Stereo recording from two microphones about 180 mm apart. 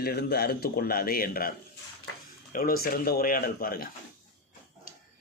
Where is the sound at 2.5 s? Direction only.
55° left (ahead or behind).